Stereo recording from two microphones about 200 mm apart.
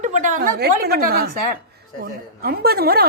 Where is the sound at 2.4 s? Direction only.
50° right (ahead or behind).